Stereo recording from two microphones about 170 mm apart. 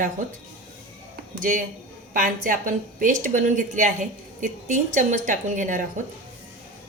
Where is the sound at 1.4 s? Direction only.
55° right (ahead or behind).